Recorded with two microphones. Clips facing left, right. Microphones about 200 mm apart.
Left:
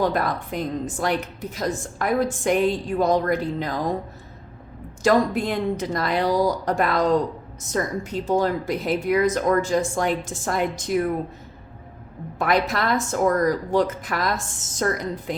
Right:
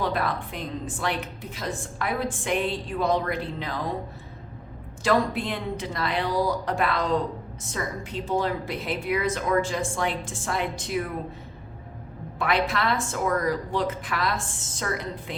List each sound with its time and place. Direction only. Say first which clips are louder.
0.0 s a woman's voice: left 4 dB; 40° left (ahead or behind)
5.0 s a woman's voice: left 4 dB; 45° left (ahead or behind)
12.4 s a woman's voice: left 3 dB; 40° left (ahead or behind)